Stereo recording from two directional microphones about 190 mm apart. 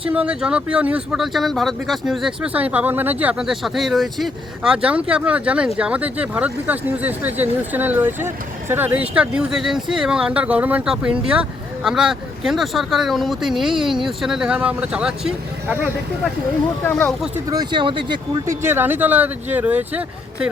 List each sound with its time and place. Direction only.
0.1 s speech: 5° right (ahead or behind)
16.8 s speech: 10° left (ahead or behind)
17.3 s speech: 20° right (ahead or behind)
18.4 s speech: 10° right (ahead or behind)